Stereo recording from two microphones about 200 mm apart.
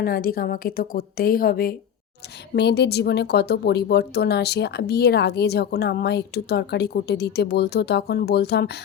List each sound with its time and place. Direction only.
0.0 s a woman's voice: 50° left (ahead or behind)